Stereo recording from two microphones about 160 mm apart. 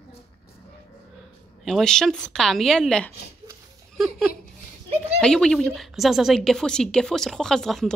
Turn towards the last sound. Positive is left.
turn(degrees=0)  # may be behind; listen again after turning